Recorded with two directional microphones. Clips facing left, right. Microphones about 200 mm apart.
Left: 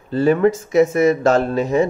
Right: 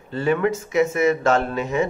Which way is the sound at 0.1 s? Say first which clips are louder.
Left 6 dB; 40° left (ahead or behind).